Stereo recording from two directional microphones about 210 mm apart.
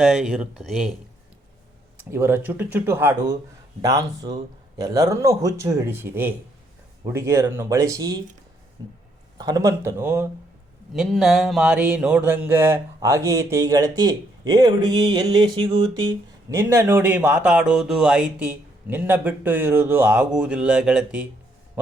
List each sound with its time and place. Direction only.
0.0 s speech: 5° right (ahead or behind)
2.0 s speech: 10° right (ahead or behind)
15.5 s a sound: 25° right (ahead or behind)
16.5 s speech: 15° right (ahead or behind)